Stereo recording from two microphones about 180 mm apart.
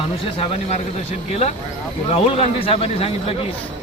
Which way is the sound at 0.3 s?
35° left (ahead or behind).